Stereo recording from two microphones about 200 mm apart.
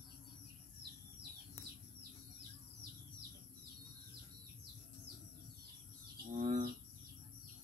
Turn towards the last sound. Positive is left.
turn(degrees=-40)  # may be behind; listen again after turning